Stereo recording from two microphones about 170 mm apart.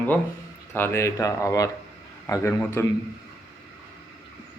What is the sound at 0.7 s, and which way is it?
Speech, 15° left (ahead or behind).